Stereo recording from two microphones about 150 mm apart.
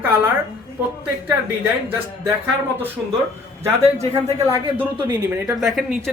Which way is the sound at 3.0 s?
5° right (ahead or behind).